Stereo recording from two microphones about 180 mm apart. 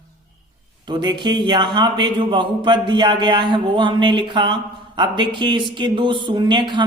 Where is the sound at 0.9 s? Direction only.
25° right (ahead or behind).